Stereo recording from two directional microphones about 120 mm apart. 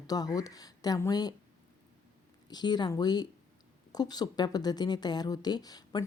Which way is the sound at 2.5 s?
35° left (ahead or behind).